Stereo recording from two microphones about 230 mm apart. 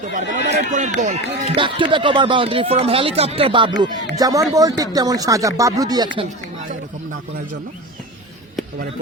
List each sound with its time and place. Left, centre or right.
0.1 s speech: right; by 6.2 s centre